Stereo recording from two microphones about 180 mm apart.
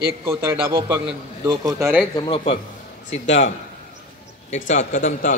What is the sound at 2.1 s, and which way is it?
Speech, 30° left (ahead or behind).